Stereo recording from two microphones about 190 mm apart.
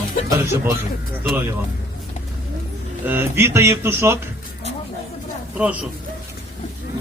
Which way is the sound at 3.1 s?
10° right (ahead or behind).